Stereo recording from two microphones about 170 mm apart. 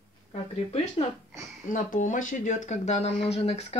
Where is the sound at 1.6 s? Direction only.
50° left (ahead or behind).